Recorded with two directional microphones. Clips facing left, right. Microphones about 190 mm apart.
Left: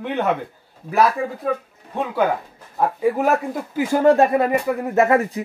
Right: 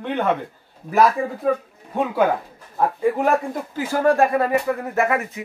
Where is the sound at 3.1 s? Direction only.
5° left (ahead or behind); by 5.3 s 30° left (ahead or behind).